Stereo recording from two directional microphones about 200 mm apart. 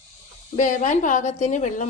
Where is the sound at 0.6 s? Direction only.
40° left (ahead or behind).